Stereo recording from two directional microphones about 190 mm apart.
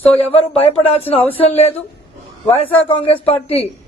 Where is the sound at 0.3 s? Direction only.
30° left (ahead or behind).